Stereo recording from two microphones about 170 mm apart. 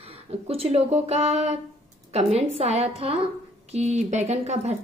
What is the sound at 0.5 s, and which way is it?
A woman's voice, 35° right (ahead or behind).